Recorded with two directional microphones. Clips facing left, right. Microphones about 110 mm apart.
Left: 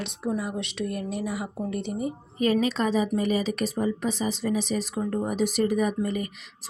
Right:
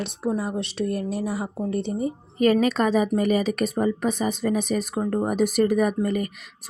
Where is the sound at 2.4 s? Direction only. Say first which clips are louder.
Right 4 dB; 55° right (ahead or behind).